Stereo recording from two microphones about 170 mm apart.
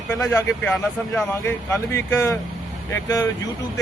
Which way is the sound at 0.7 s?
Centre (ahead or behind).